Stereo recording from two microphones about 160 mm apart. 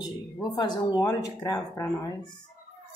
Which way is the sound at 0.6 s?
25° left (ahead or behind).